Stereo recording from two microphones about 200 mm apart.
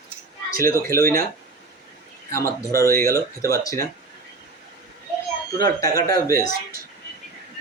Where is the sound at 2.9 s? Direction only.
50° right (ahead or behind).